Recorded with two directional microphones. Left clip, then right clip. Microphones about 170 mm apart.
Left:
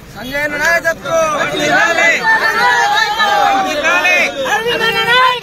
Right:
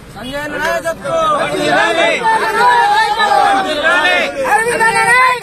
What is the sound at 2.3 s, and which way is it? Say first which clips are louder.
Chatter: right 1 dB; 45° right (ahead or behind).